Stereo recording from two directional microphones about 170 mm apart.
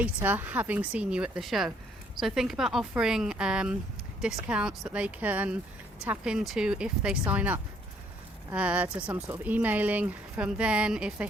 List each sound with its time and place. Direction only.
0.0 s a woman's voice: 10° right (ahead or behind)